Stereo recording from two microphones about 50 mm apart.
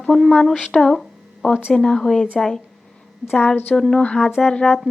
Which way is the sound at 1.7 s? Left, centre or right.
Centre.